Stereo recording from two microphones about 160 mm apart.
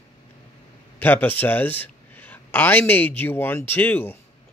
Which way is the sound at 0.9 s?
10° left (ahead or behind).